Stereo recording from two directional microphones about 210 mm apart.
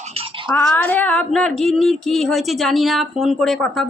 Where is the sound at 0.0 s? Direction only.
30° right (ahead or behind).